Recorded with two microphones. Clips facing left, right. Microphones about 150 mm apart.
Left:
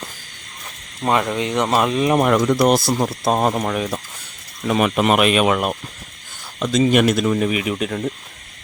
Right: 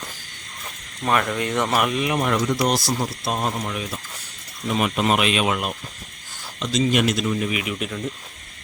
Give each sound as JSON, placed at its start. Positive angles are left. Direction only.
{"t": 1.0, "sound": "speech", "side_deg": 20}
{"t": 2.1, "sound": "speech", "side_deg": 60}
{"t": 3.8, "sound": "speech", "side_deg": 55}
{"t": 4.7, "sound": "speech", "side_deg": 65}
{"t": 7.5, "sound": "speech", "side_deg": 40}